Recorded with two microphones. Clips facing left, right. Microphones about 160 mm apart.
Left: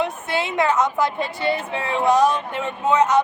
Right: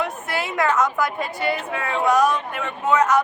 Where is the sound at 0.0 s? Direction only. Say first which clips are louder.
Left 2 dB; 25° left (ahead or behind).